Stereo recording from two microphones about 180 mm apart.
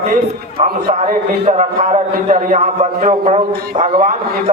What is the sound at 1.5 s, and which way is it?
A man's voice, 45° right (ahead or behind).